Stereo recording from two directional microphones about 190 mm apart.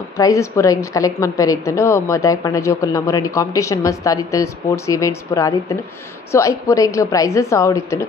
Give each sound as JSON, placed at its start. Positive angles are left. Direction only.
{"t": 0.2, "sound": "a woman's voice", "side_deg": 15}